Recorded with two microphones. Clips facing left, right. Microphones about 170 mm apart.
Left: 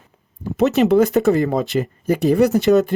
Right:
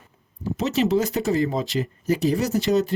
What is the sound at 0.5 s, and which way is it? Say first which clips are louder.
Speech: left 7 dB; 60° left (ahead or behind).